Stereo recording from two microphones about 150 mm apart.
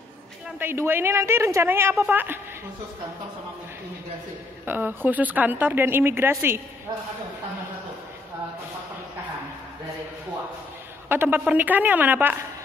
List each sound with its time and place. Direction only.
0.6 s a woman's voice: 15° right (ahead or behind)
4.6 s a woman's voice: 15° right (ahead or behind)
11.1 s a woman's voice: 15° right (ahead or behind)